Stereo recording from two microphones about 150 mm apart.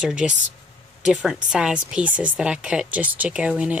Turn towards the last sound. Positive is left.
turn(degrees=-5)  # may be behind; listen again after turning